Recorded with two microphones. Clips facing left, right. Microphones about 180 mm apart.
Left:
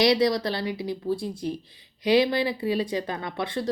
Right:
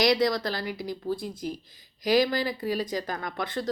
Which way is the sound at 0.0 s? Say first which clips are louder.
Left 2 dB; 25° left (ahead or behind).